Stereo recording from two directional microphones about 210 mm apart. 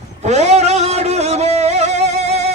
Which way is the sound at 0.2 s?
30° right (ahead or behind).